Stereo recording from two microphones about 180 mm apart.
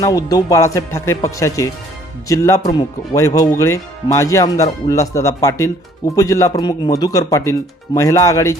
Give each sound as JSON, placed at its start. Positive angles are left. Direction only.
{"t": 0.0, "sound": "speech", "side_deg": 20}